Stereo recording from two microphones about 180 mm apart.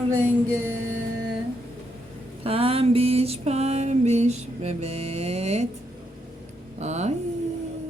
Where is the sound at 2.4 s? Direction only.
30° right (ahead or behind).